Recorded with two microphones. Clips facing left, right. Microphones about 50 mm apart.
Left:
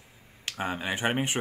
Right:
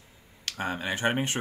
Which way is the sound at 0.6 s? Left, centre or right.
Centre.